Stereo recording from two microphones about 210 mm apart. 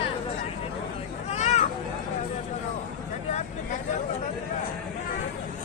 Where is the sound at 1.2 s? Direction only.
35° left (ahead or behind).